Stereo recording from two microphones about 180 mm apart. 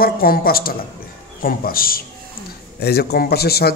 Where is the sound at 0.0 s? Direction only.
55° left (ahead or behind).